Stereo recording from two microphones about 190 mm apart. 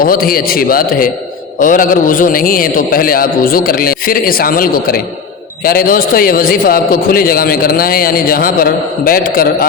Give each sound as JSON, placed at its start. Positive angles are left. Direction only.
{"t": 0.0, "sound": "a man's voice", "side_deg": 50}